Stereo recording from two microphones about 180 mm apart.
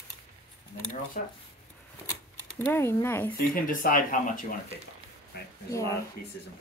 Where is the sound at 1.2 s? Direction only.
45° left (ahead or behind).